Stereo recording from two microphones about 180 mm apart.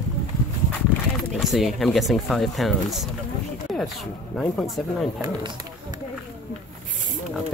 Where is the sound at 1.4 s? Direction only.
Centre (ahead or behind).